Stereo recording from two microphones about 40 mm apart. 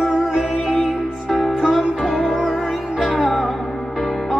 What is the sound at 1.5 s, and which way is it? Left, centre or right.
Music, centre.